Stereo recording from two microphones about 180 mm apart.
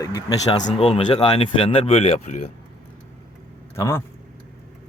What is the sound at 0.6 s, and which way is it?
Speech, 35° left (ahead or behind).